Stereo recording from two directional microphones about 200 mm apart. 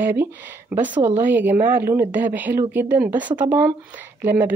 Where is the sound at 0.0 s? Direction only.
10° right (ahead or behind).